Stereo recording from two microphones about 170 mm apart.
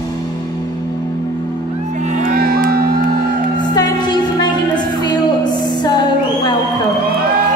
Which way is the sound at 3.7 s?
25° left (ahead or behind).